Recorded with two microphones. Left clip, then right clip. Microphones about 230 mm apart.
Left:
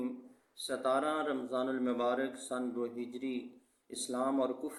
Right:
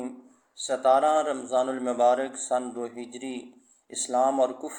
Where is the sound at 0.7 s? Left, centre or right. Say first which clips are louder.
Right 11 dB; centre.